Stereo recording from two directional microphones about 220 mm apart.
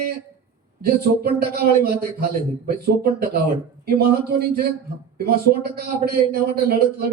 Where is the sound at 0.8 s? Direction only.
45° right (ahead or behind).